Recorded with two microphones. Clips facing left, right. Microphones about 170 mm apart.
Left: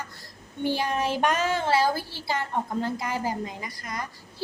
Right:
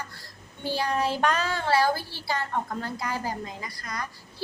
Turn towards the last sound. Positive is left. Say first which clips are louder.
# left 1 dB
turn(degrees=20)  # may be behind; listen again after turning